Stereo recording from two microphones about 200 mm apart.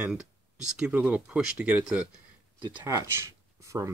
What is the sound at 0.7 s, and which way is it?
Speech, 5° right (ahead or behind).